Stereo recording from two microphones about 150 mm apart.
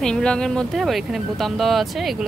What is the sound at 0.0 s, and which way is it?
Speech, 5° left (ahead or behind).